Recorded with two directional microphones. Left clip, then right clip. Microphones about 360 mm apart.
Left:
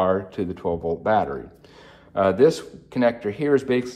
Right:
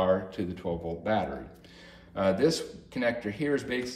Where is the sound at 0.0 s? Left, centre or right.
Centre.